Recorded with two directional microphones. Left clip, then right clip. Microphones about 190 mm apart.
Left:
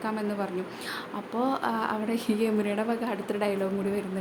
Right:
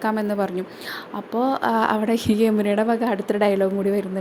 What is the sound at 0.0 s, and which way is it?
A woman's voice, 35° right (ahead or behind).